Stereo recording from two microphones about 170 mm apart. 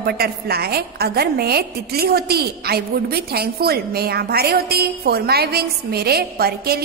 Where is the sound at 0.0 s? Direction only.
65° right (ahead or behind).